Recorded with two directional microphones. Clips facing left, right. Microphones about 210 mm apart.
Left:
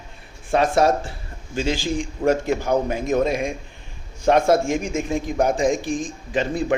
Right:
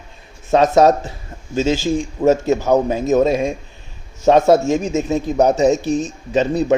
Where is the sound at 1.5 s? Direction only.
20° right (ahead or behind).